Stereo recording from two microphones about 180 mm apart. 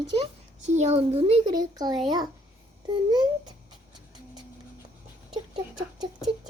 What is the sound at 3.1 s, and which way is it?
Speech, 20° right (ahead or behind).